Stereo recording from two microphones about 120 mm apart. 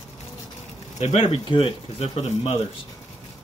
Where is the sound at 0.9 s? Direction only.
55° left (ahead or behind).